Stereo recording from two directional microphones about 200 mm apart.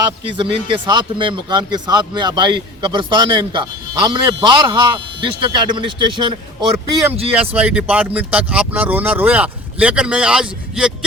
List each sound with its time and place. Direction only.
0.3 s speech: 25° right (ahead or behind)
7.5 s speech: 5° right (ahead or behind)